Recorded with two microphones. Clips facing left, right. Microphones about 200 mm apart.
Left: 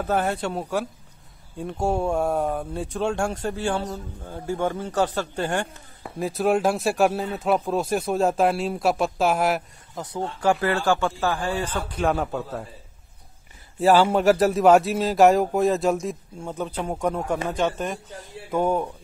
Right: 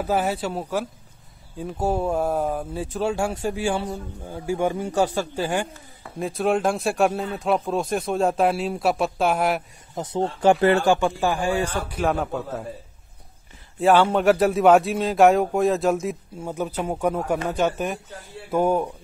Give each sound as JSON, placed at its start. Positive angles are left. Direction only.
{"t": 0.0, "sound": "a man's voice", "side_deg": -5}
{"t": 9.9, "sound": "speech", "side_deg": -25}
{"t": 13.7, "sound": "a man's voice", "side_deg": 5}